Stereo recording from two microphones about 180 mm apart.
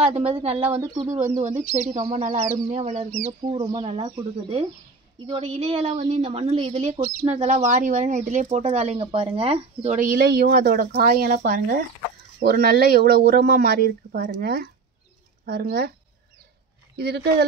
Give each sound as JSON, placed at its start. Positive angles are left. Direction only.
{"t": 0.0, "sound": "a woman's voice", "side_deg": -35}
{"t": 0.7, "sound": "speech", "side_deg": -20}
{"t": 1.3, "sound": "a woman's voice", "side_deg": -40}
{"t": 9.9, "sound": "speech", "side_deg": -50}
{"t": 16.9, "sound": "speech", "side_deg": -65}